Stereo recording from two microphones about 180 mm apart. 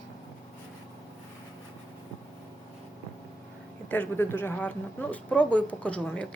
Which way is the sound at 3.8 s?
10° left (ahead or behind).